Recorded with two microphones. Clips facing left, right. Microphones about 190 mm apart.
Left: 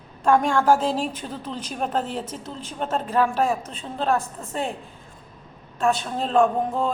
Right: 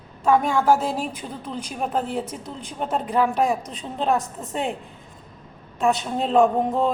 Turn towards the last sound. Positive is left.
turn(degrees=-20)  # may be behind; listen again after turning